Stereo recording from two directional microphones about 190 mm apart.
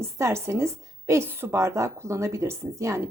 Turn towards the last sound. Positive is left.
turn(degrees=-15)  # may be behind; listen again after turning